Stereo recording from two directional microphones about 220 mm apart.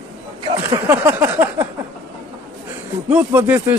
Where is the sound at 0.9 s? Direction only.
10° right (ahead or behind).